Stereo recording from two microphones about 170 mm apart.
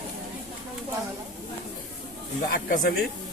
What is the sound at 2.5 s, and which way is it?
Speech, 60° left (ahead or behind).